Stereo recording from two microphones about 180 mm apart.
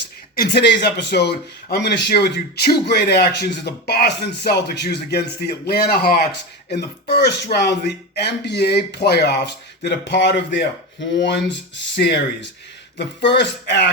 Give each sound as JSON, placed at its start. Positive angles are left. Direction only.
{"t": 0.3, "sound": "speech", "side_deg": 65}
{"t": 13.3, "sound": "speech", "side_deg": 75}